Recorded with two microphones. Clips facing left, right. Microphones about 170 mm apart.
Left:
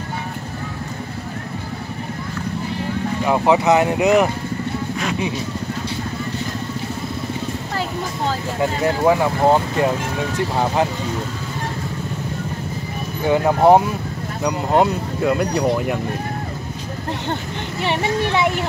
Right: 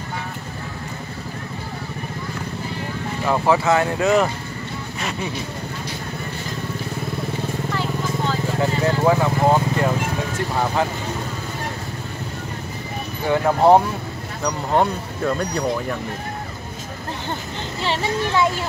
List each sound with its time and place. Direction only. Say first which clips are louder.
3.3 s speech: left 2 dB; 20° left (ahead or behind)
9.0 s speech: left 2 dB; 20° left (ahead or behind)
13.3 s speech: left 1 dB; 15° left (ahead or behind)
17.8 s speech: left 2 dB; 20° left (ahead or behind)